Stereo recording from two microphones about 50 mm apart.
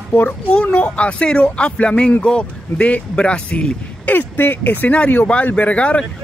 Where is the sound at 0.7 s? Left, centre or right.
Left.